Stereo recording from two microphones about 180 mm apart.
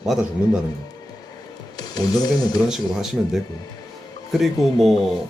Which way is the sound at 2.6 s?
Centre (ahead or behind).